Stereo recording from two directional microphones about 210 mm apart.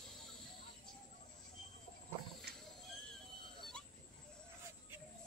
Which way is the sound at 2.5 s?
50° right (ahead or behind).